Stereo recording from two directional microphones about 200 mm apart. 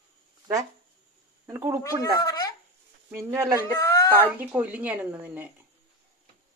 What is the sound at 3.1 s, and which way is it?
Speech, 10° right (ahead or behind).